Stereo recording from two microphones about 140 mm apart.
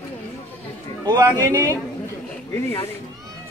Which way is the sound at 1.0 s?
25° right (ahead or behind).